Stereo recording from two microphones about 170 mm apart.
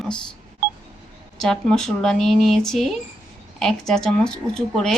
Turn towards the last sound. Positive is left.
turn(degrees=5)  # may be behind; listen again after turning